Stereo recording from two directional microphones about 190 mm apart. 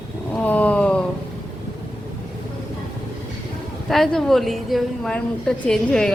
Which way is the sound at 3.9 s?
Centre (ahead or behind).